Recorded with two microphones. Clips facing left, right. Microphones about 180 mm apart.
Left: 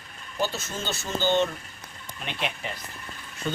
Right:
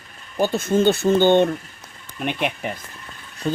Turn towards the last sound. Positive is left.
turn(degrees=-35)  # may be behind; listen again after turning